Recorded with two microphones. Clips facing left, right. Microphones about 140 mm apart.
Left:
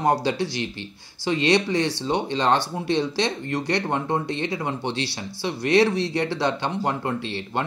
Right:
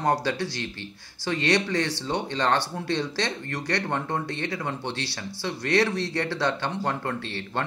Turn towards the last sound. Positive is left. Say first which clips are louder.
# left 3 dB
turn(degrees=20)  # may be behind; listen again after turning